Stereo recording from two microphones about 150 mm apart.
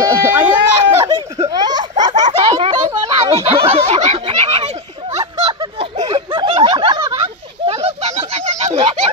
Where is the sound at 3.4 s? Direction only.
40° right (ahead or behind).